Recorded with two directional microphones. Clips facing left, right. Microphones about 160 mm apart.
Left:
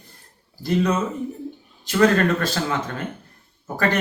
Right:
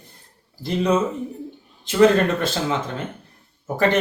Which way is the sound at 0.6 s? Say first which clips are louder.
Right 1 dB; 25° right (ahead or behind).